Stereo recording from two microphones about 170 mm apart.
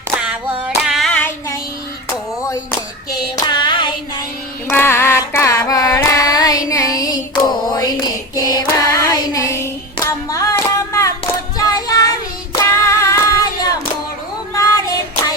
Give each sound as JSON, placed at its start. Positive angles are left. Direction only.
{"t": 0.6, "sound": "singing", "side_deg": -5}
{"t": 3.3, "sound": "hands", "side_deg": 25}
{"t": 4.7, "sound": "carnatic music", "side_deg": 15}
{"t": 6.7, "sound": "female singing", "side_deg": 20}
{"t": 11.5, "sound": "child singing", "side_deg": 20}
{"t": 12.5, "sound": "singing", "side_deg": 15}